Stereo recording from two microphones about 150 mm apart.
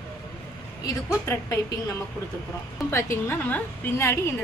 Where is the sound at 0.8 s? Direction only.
20° left (ahead or behind).